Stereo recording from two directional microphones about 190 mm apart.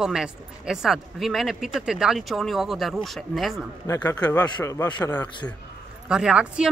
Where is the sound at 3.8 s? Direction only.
15° left (ahead or behind).